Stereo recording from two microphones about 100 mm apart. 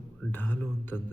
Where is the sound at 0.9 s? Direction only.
Centre (ahead or behind).